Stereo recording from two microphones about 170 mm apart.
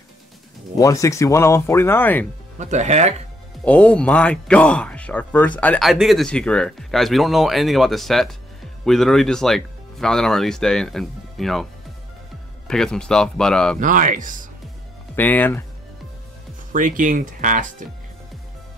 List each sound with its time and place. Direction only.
0.7 s speech: 20° left (ahead or behind)
2.6 s speech: 45° right (ahead or behind)
3.6 s speech: 10° left (ahead or behind)
12.6 s speech: 5° left (ahead or behind)
13.7 s speech: 50° right (ahead or behind)
15.1 s speech: 10° left (ahead or behind)
16.7 s speech: 50° right (ahead or behind)